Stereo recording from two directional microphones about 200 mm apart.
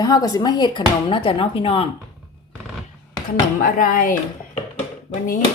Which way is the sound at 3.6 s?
45° left (ahead or behind).